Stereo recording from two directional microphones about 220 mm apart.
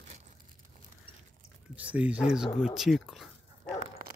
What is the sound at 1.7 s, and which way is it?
Speech, 5° right (ahead or behind).